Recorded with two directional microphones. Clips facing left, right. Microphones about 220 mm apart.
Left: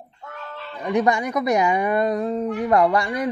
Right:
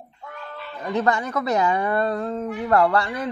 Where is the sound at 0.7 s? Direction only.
15° left (ahead or behind).